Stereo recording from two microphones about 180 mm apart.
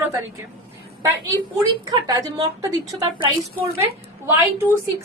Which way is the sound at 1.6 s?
20° right (ahead or behind).